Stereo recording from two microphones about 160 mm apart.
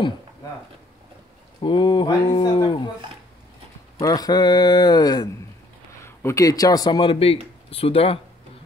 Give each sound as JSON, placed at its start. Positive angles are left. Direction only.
{"t": 1.6, "sound": "speech", "side_deg": 30}
{"t": 4.0, "sound": "speech", "side_deg": 25}